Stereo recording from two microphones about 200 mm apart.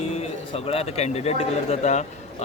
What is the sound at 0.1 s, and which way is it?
A man's voice, 30° left (ahead or behind).